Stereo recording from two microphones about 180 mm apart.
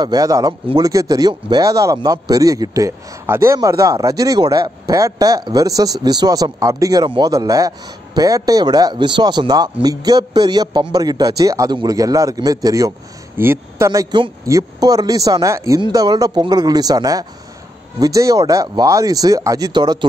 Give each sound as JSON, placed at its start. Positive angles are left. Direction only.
{"t": 0.0, "sound": "speech", "side_deg": -20}